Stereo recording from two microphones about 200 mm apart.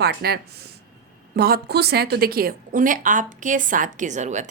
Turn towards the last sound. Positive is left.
turn(degrees=-35)  # may be behind; listen again after turning